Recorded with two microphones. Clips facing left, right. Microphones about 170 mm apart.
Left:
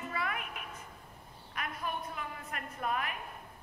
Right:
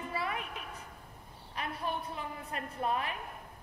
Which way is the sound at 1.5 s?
30° right (ahead or behind).